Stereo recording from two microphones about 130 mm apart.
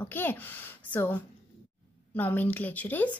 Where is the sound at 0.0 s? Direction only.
15° left (ahead or behind).